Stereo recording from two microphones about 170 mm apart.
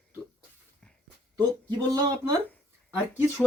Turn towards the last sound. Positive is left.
turn(degrees=-10)  # may be behind; listen again after turning